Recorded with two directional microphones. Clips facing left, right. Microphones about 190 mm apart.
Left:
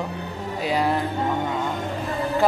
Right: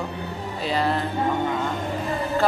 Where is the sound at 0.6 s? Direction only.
10° left (ahead or behind).